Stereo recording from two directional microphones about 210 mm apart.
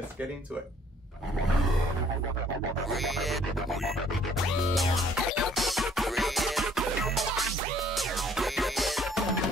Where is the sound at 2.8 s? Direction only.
Centre (ahead or behind).